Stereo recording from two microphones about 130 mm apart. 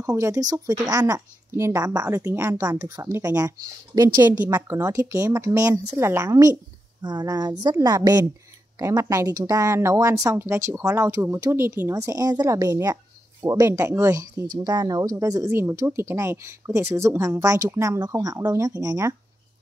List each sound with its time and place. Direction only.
0.0 s speech: 25° right (ahead or behind)
4.2 s a woman's voice: 15° right (ahead or behind)
4.5 s a woman's voice: 25° right (ahead or behind)
11.9 s speech: 25° right (ahead or behind)